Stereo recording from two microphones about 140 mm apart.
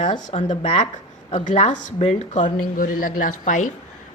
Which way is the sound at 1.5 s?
60° left (ahead or behind).